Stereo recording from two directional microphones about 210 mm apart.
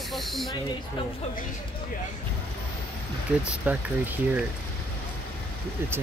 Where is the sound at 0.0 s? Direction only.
Centre (ahead or behind).